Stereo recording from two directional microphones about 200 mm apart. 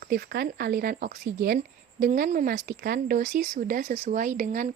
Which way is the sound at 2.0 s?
40° right (ahead or behind).